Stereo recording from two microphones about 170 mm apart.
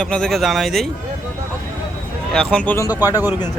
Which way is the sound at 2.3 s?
5° left (ahead or behind).